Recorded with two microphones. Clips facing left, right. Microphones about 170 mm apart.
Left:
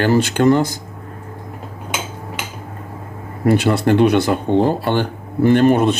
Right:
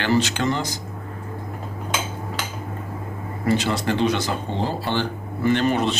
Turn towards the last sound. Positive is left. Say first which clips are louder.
# left 7 dB
turn(degrees=50)  # may be behind; listen again after turning